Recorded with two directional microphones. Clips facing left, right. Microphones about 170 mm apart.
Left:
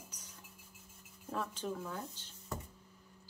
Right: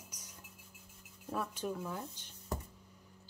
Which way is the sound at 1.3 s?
10° right (ahead or behind).